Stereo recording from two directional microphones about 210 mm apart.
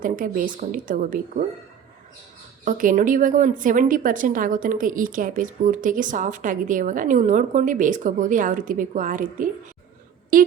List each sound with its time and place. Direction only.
0.0 s a woman's voice: 40° right (ahead or behind)
2.6 s a woman's voice: 40° right (ahead or behind)